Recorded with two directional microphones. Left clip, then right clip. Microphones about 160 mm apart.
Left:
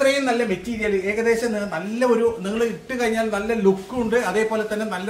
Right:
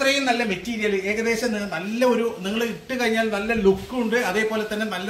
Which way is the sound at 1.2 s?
30° left (ahead or behind).